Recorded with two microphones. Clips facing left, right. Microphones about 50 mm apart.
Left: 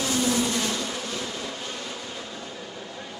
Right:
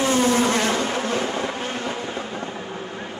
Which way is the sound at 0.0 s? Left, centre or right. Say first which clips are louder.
Right 6 dB; right.